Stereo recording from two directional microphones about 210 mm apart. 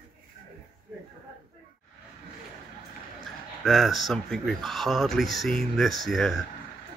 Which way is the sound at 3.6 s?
Centre (ahead or behind).